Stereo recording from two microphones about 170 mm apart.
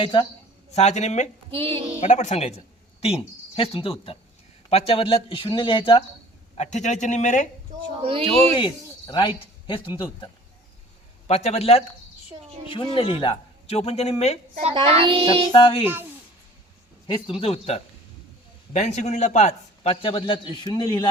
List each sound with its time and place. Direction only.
0.0 s speech: 30° left (ahead or behind)
0.7 s speech: 40° left (ahead or behind)
1.5 s child singing: 30° right (ahead or behind)
2.0 s a man's voice: 45° left (ahead or behind)
6.6 s speech: 45° left (ahead or behind)
8.0 s child singing: 35° right (ahead or behind)
8.5 s speech: 25° left (ahead or behind)
11.3 s a man's voice: 40° left (ahead or behind)
14.6 s child singing: 35° right (ahead or behind)
15.5 s a man's voice: 30° left (ahead or behind)
17.1 s a man's voice: 35° left (ahead or behind)